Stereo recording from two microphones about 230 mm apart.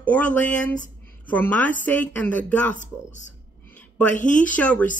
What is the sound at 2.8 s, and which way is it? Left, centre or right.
Speech, left.